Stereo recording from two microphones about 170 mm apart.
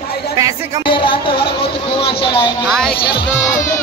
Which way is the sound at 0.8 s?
30° left (ahead or behind).